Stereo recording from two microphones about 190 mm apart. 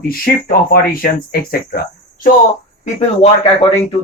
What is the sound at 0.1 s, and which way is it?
Speech, 50° left (ahead or behind).